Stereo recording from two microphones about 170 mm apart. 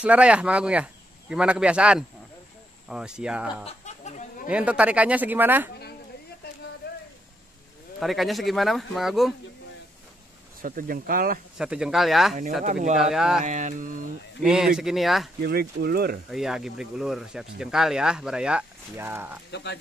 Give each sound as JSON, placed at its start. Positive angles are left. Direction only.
{"t": 0.0, "sound": "speech", "side_deg": -5}
{"t": 3.6, "sound": "a sound", "side_deg": 45}
{"t": 4.5, "sound": "speech", "side_deg": -5}
{"t": 8.0, "sound": "speech", "side_deg": 0}
{"t": 10.6, "sound": "speech", "side_deg": -55}
{"t": 11.5, "sound": "speech", "side_deg": -5}
{"t": 13.5, "sound": "mantra", "side_deg": -45}
{"t": 14.4, "sound": "speech", "side_deg": -5}
{"t": 15.4, "sound": "speech", "side_deg": -65}
{"t": 16.3, "sound": "speech", "side_deg": 0}
{"t": 19.5, "sound": "speech", "side_deg": 90}